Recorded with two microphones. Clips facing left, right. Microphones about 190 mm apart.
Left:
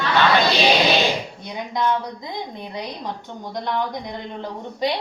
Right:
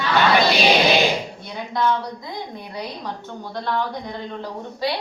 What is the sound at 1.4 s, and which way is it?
A woman's voice, 15° left (ahead or behind).